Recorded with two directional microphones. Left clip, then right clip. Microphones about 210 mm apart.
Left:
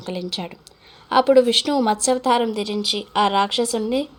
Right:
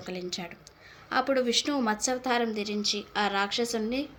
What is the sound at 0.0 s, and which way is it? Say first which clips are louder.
A woman's voice: left 8 dB; 30° left (ahead or behind).